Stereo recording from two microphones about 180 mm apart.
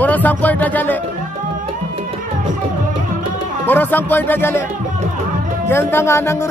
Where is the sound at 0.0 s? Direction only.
10° left (ahead or behind).